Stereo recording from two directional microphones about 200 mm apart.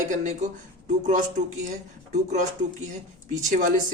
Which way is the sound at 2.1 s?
35° right (ahead or behind).